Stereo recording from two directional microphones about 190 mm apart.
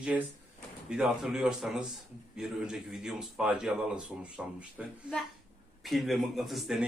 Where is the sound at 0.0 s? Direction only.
10° right (ahead or behind).